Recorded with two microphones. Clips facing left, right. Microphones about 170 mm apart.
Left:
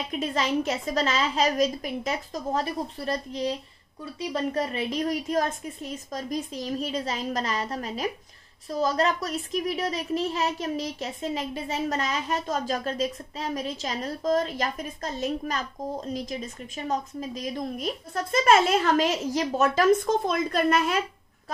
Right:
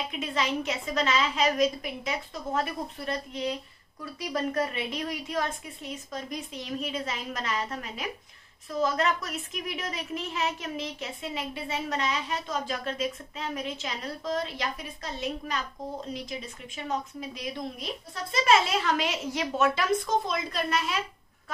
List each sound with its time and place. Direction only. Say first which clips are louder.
0.1 s a woman's voice: left 6 dB; 40° left (ahead or behind)